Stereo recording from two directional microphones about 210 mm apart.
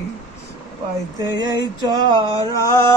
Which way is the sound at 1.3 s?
20° right (ahead or behind).